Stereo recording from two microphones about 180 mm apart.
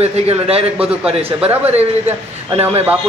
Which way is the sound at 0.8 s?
5° right (ahead or behind).